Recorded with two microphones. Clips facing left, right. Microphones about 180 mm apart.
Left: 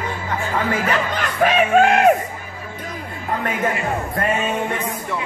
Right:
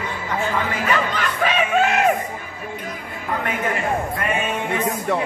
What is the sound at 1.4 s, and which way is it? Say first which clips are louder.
Chicken: left 5 dB; 50° left (ahead or behind).